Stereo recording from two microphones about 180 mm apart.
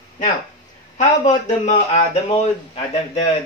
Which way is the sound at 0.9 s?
40° left (ahead or behind).